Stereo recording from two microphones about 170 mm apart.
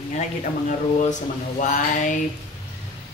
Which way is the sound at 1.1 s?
45° left (ahead or behind).